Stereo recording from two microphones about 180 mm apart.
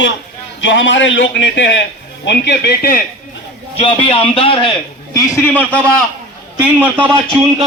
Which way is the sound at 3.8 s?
30° left (ahead or behind).